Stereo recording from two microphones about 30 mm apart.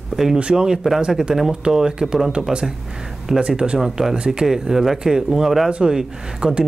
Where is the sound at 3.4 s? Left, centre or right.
Right.